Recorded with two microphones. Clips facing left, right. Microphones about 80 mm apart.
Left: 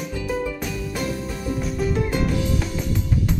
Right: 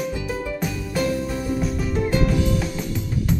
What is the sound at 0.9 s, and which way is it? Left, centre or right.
Music, centre.